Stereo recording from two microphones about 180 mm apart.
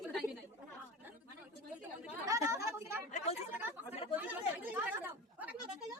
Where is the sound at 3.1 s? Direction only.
40° left (ahead or behind).